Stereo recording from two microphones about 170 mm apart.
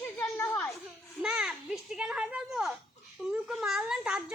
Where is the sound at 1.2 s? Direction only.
5° right (ahead or behind).